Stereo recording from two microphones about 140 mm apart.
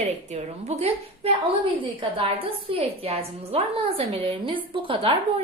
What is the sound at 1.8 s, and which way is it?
A woman's voice, 35° right (ahead or behind).